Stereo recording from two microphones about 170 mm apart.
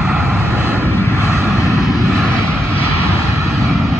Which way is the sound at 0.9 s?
15° left (ahead or behind).